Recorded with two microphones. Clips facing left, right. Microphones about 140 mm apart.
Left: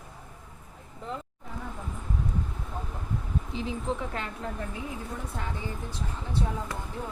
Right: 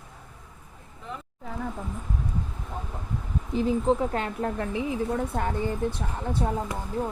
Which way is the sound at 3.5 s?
40° right (ahead or behind).